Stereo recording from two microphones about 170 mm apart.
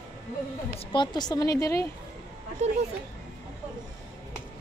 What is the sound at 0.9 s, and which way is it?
Speech, 25° left (ahead or behind).